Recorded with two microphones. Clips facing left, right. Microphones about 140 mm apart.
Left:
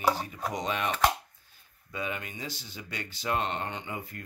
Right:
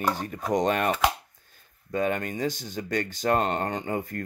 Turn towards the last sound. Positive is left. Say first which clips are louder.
# right 8 dB
turn(degrees=-45)  # may be behind; listen again after turning